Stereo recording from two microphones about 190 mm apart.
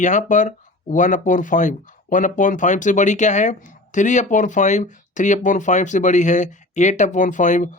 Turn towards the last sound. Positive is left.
turn(degrees=40)  # may be behind; listen again after turning